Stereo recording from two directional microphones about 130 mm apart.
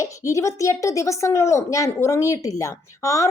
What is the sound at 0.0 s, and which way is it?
Speech, 25° left (ahead or behind).